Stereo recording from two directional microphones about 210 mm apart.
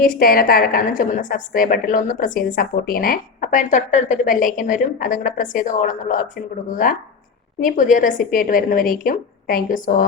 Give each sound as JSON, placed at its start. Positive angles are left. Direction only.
{"t": 0.0, "sound": "a woman's voice", "side_deg": 40}